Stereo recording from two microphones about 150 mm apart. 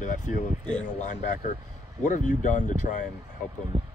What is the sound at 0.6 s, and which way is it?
Speech, 5° left (ahead or behind).